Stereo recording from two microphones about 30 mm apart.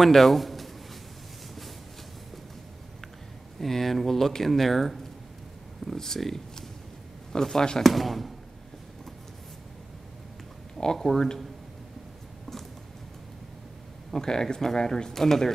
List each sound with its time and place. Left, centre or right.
0.0 s speech: centre
3.5 s speech: centre
7.3 s speech: left
7.8 s speech: centre
10.8 s speech: centre
14.2 s speech: left
15.0 s speech: centre